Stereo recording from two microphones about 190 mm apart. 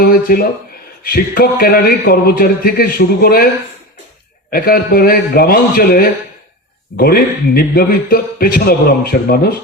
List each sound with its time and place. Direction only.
0.0 s a man's voice: 50° left (ahead or behind)
4.5 s a man's voice: 50° left (ahead or behind)